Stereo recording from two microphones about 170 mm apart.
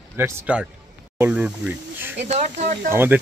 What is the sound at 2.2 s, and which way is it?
Speech, 40° right (ahead or behind).